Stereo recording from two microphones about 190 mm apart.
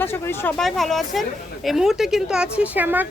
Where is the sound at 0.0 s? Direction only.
10° left (ahead or behind).